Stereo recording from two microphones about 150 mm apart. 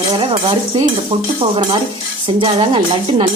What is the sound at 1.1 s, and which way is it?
Speech, 30° right (ahead or behind).